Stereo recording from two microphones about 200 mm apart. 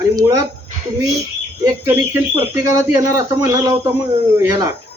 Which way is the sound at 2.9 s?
15° right (ahead or behind).